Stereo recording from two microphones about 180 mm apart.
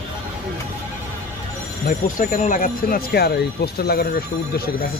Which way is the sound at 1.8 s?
45° left (ahead or behind).